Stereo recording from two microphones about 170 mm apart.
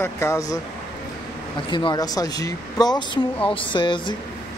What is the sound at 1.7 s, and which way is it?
Speech, 25° left (ahead or behind).